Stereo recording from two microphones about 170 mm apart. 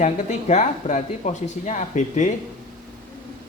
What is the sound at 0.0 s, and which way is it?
Speech, 45° left (ahead or behind).